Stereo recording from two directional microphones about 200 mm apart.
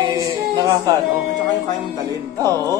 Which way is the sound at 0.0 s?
20° right (ahead or behind).